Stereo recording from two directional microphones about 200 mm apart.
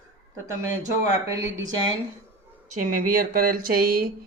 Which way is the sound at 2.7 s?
45° right (ahead or behind).